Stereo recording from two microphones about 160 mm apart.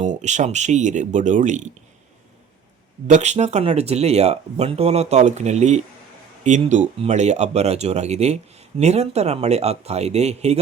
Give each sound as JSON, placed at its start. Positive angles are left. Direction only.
{"t": 0.0, "sound": "speech", "side_deg": -50}
{"t": 3.1, "sound": "speech", "side_deg": -45}